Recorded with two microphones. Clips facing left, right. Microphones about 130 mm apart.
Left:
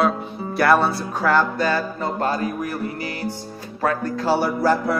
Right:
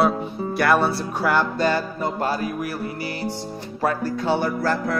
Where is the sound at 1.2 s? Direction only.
15° right (ahead or behind).